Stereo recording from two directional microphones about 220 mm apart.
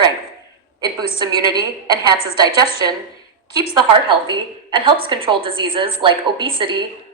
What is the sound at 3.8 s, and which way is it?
A woman's voice, 20° right (ahead or behind).